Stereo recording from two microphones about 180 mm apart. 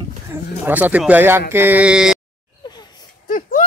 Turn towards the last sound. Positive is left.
turn(degrees=50)  # may be behind; listen again after turning